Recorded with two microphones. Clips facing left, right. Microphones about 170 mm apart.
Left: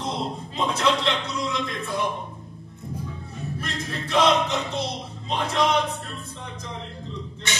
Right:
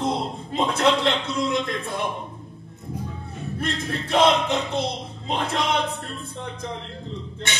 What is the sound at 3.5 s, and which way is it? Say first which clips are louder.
Speech: right 6 dB; 55° right (ahead or behind).